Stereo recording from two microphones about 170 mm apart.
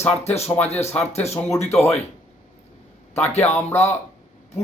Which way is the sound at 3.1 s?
10° left (ahead or behind).